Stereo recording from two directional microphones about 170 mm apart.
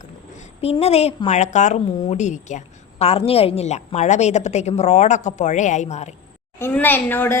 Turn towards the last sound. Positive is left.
turn(degrees=10)  # may be behind; listen again after turning